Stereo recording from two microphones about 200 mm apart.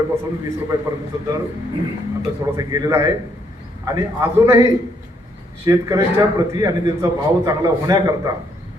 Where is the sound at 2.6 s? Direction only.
20° right (ahead or behind).